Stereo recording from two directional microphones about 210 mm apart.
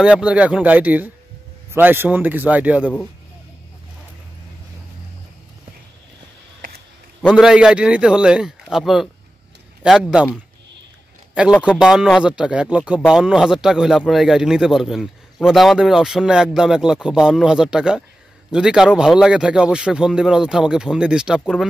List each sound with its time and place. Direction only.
0.0 s a man's voice: 5° right (ahead or behind)
7.2 s a man's voice: centre (ahead or behind)
11.3 s a man's voice: 5° right (ahead or behind)